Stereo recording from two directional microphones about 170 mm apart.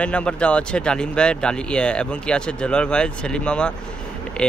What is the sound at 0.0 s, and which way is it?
Speech, 5° left (ahead or behind).